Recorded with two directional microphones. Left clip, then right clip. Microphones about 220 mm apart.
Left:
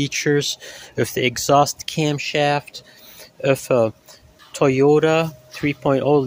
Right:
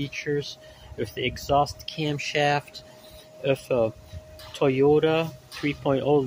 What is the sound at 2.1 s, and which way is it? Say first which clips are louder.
Speech: left 3 dB; 20° left (ahead or behind).